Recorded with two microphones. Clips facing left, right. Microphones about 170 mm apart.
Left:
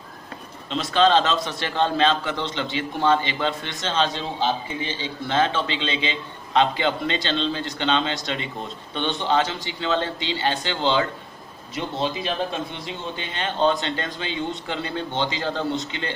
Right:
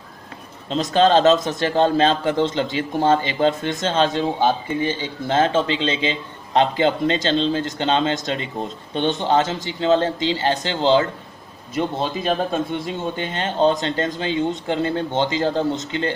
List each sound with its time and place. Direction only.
0.7 s a man's voice: 45° right (ahead or behind)